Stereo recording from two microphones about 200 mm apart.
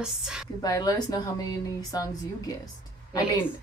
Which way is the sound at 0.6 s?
20° left (ahead or behind).